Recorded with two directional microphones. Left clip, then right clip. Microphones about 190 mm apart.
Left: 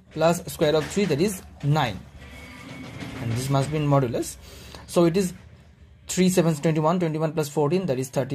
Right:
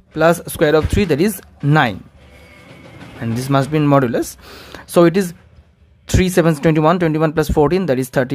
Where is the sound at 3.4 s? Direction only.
30° right (ahead or behind).